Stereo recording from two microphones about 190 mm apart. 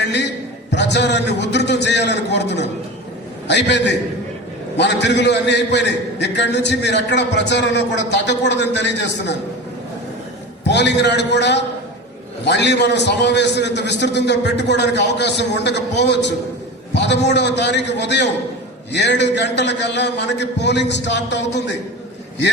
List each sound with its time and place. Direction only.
0.0 s a sound: 65° left (ahead or behind)
0.7 s a man's voice: 65° left (ahead or behind)
10.6 s a man's voice: 65° left (ahead or behind)